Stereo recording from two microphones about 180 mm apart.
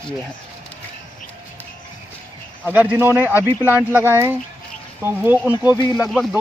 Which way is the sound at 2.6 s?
10° right (ahead or behind).